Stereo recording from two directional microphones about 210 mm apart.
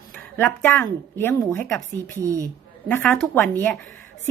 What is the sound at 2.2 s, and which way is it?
Speech, 15° right (ahead or behind).